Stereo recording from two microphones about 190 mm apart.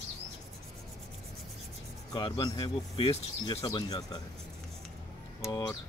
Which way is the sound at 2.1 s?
25° left (ahead or behind).